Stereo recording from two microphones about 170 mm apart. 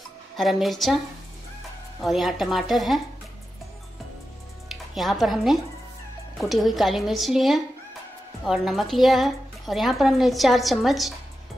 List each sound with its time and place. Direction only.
0.4 s a woman's voice: centre (ahead or behind)
2.0 s a woman's voice: centre (ahead or behind)
4.6 s a woman's voice: centre (ahead or behind)